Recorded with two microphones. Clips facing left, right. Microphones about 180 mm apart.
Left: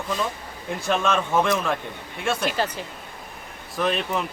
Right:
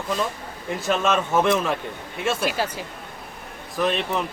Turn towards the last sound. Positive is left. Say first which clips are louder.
# right 1 dB
turn(degrees=0)  # may be behind; listen again after turning